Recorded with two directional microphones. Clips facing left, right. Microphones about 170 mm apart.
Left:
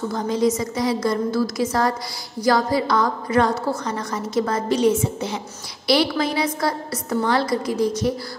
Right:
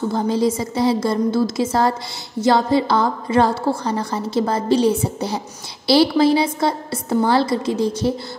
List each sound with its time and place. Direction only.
0.1 s a woman's voice: 30° right (ahead or behind)